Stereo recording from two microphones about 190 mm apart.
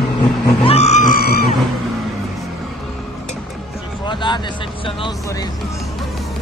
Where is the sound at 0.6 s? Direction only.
35° left (ahead or behind).